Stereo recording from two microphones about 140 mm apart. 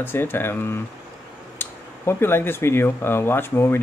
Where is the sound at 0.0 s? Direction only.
15° left (ahead or behind).